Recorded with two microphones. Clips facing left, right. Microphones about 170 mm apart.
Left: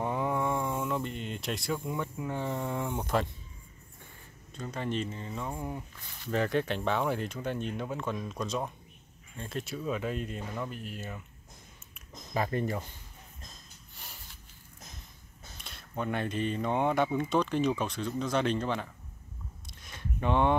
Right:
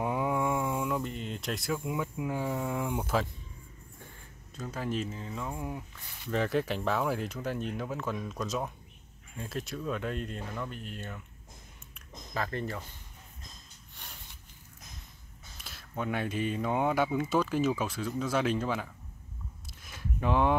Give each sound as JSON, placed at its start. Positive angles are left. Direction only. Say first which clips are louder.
{"t": 0.0, "sound": "speech", "louder": "right 1 dB", "side_deg": -10}
{"t": 4.6, "sound": "speech", "louder": "even", "side_deg": -5}
{"t": 12.4, "sound": "speech", "louder": "left 4 dB", "side_deg": 15}
{"t": 14.0, "sound": "a sound", "louder": "even", "side_deg": 0}
{"t": 15.5, "sound": "speech", "louder": "left 1 dB", "side_deg": 0}
{"t": 19.6, "sound": "a sound", "louder": "right 1 dB", "side_deg": -5}